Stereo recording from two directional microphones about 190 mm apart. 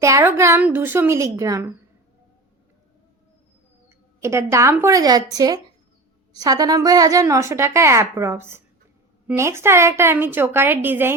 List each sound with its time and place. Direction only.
0.0 s a woman's voice: 15° right (ahead or behind)
3.8 s a woman's voice: 15° right (ahead or behind)